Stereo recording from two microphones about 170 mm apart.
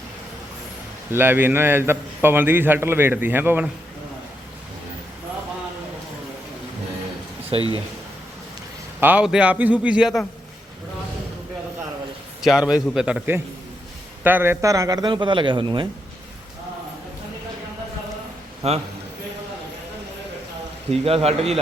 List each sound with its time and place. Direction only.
1.1 s a man's voice: 10° right (ahead or behind)
7.5 s a man's voice: 30° right (ahead or behind)
9.0 s a man's voice: 10° right (ahead or behind)
12.4 s a man's voice: centre (ahead or behind); by 15.9 s 30° right (ahead or behind)
18.6 s a man's voice: 40° right (ahead or behind)
20.9 s a man's voice: 35° right (ahead or behind)